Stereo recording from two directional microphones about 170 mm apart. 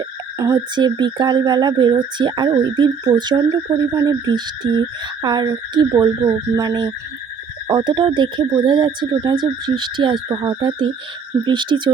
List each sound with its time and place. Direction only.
0.3 s speech: 20° right (ahead or behind)